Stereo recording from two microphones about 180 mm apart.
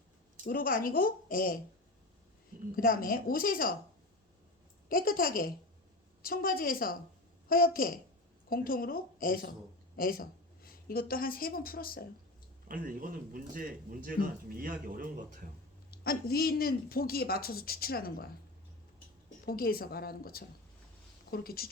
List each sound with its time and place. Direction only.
0.4 s a woman's voice: 50° left (ahead or behind)
2.7 s a woman's voice: 50° left (ahead or behind)
4.9 s a woman's voice: 55° left (ahead or behind)
12.6 s a man's voice: 50° right (ahead or behind)
15.9 s speech: 60° left (ahead or behind)
19.5 s a woman's voice: 55° left (ahead or behind)